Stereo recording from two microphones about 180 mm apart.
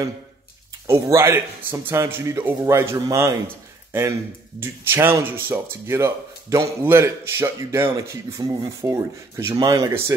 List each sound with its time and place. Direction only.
0.8 s speech: 15° right (ahead or behind)
4.6 s speech: 10° right (ahead or behind)